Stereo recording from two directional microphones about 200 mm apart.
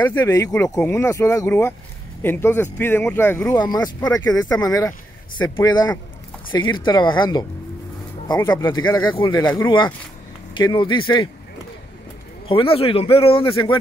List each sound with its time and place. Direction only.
0.0 s speech: 15° left (ahead or behind)
10.5 s speech: 25° left (ahead or behind)
12.4 s speech: 25° left (ahead or behind)